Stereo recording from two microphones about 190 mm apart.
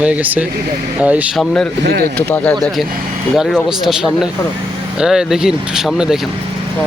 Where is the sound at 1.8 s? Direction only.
60° right (ahead or behind).